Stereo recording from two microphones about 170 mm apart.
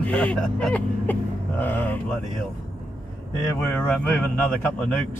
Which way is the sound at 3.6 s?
10° left (ahead or behind).